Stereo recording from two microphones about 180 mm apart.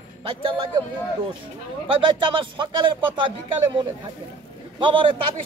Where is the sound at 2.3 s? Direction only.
25° right (ahead or behind).